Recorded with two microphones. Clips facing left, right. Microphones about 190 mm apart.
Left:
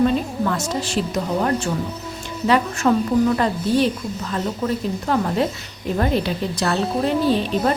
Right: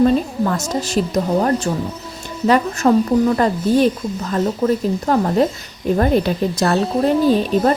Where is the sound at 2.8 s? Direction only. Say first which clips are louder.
Right 3 dB; 40° right (ahead or behind).